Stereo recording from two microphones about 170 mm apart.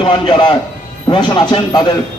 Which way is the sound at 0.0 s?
30° left (ahead or behind).